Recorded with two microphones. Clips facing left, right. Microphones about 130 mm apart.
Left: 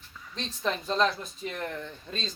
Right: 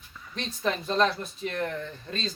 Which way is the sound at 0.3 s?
5° right (ahead or behind).